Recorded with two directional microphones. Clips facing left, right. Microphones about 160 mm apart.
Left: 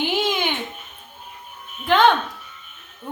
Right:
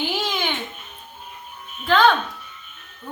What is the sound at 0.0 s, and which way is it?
Babbling, 20° left (ahead or behind).